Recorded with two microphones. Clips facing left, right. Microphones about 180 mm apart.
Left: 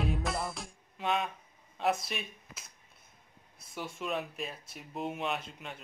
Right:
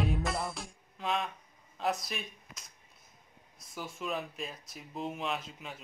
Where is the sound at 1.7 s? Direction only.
Centre (ahead or behind).